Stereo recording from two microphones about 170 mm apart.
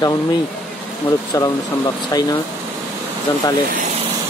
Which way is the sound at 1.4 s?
20° left (ahead or behind).